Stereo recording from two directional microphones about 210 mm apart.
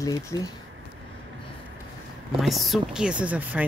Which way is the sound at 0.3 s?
15° left (ahead or behind).